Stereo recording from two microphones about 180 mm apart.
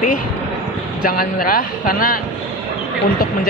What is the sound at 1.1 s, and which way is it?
Speech, 55° left (ahead or behind).